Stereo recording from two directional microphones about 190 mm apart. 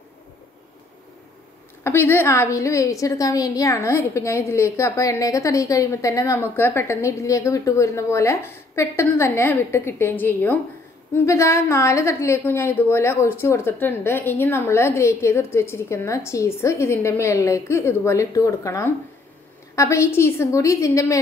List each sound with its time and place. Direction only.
1.8 s a woman's voice: 10° left (ahead or behind)